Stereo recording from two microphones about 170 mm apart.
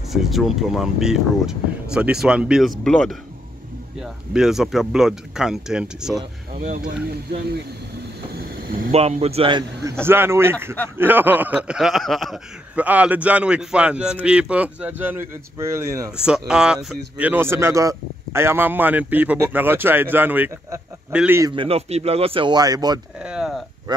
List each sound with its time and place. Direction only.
0.1 s speech: centre (ahead or behind)
8.4 s a sound: 55° right (ahead or behind)
8.9 s speech: 35° right (ahead or behind)
10.0 s speech: 15° right (ahead or behind)
16.2 s speech: 5° right (ahead or behind)
21.5 s speech: 30° right (ahead or behind)
23.2 s speech: 5° right (ahead or behind)